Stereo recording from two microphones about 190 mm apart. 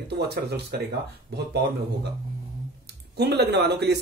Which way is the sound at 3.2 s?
60° right (ahead or behind).